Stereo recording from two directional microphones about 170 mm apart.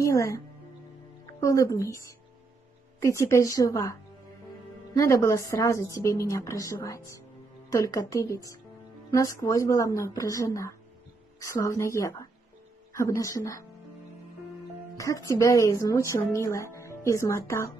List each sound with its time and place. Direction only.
0.0 s speech: 20° left (ahead or behind)
1.4 s a woman's voice: 20° left (ahead or behind)
15.0 s speech: 20° left (ahead or behind)